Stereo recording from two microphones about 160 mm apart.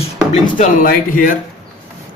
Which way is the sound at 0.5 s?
55° left (ahead or behind).